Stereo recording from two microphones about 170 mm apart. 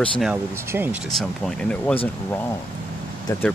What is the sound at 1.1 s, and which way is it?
Speech, 5° left (ahead or behind).